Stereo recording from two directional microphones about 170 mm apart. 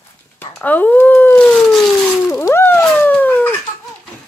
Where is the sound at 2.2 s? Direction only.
15° left (ahead or behind).